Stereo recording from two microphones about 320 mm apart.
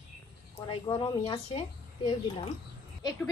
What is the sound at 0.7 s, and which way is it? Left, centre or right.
Speech, centre.